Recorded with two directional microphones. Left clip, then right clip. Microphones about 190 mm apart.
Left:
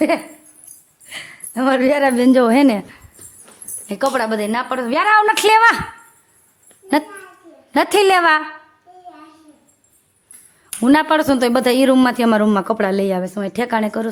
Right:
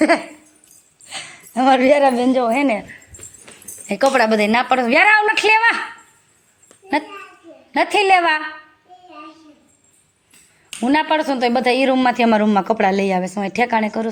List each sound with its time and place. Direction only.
1.0 s a woman's voice: 10° left (ahead or behind); by 3.0 s 30° left (ahead or behind)
4.0 s a woman's voice: centre (ahead or behind)
5.0 s a woman's voice: 30° left (ahead or behind)
7.7 s a woman's voice: 40° left (ahead or behind)
10.8 s a man's voice: 35° left (ahead or behind)